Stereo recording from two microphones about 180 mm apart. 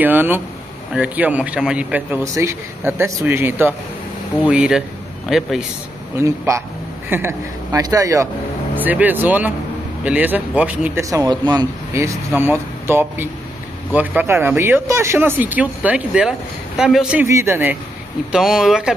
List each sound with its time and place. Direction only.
0.0 s speech: 10° right (ahead or behind)
6.1 s speech: 15° right (ahead or behind)
11.1 s speech: 20° right (ahead or behind); by 18.9 s 5° right (ahead or behind)